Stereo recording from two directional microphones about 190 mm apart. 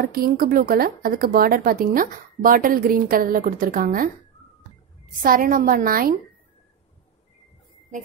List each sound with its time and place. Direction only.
0.0 s speech: 50° right (ahead or behind)
5.2 s speech: 45° right (ahead or behind)